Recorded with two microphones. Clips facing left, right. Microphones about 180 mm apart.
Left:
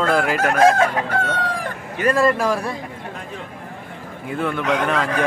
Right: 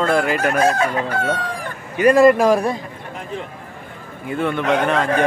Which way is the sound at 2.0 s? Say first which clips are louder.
Right 6 dB; 15° right (ahead or behind).